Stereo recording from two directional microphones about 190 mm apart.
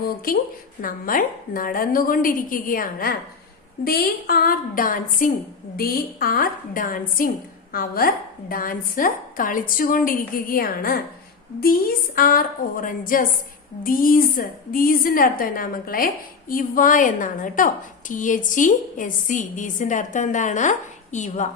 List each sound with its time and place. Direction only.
0.3 s a woman's voice: 50° left (ahead or behind)